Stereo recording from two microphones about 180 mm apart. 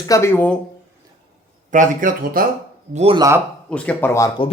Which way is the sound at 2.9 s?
30° right (ahead or behind).